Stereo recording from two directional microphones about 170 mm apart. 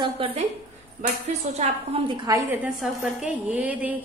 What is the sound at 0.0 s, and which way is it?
Speech, 35° right (ahead or behind).